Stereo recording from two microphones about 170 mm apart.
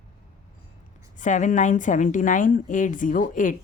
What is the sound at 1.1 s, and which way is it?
Speech, 45° left (ahead or behind).